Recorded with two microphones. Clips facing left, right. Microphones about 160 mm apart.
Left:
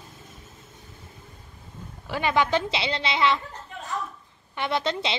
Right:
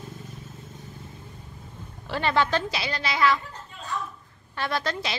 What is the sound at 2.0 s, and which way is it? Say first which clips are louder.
A woman's voice: even; 10° left (ahead or behind).